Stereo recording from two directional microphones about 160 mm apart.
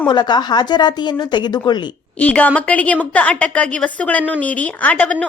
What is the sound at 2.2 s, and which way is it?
A woman's voice, 10° left (ahead or behind).